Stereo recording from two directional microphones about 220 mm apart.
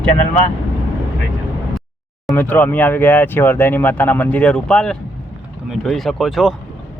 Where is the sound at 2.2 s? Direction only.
10° left (ahead or behind).